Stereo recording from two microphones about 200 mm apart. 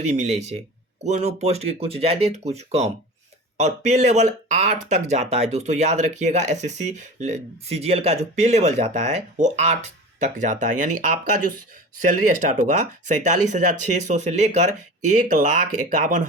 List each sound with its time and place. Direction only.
0.0 s speech: 35° right (ahead or behind)